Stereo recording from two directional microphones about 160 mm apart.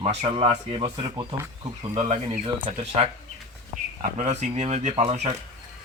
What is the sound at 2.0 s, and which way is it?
Speech, 40° right (ahead or behind).